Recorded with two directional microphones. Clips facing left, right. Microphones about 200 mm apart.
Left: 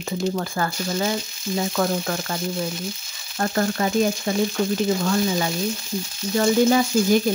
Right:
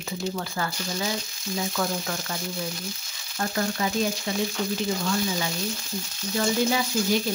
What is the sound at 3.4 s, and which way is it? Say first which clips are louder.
Speech: left 5 dB; 50° left (ahead or behind).